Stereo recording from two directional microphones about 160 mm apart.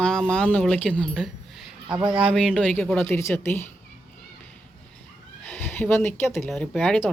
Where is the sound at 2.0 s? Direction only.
30° right (ahead or behind).